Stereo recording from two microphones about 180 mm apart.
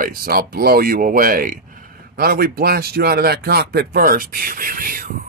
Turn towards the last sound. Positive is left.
turn(degrees=-55)  # may be behind; listen again after turning